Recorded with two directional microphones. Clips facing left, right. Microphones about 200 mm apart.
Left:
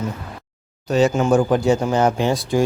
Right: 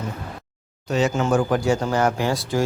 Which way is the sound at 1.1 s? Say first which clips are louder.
Left 4 dB; 20° left (ahead or behind).